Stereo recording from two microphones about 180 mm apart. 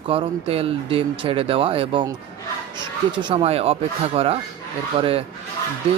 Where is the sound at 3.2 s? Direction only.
30° right (ahead or behind).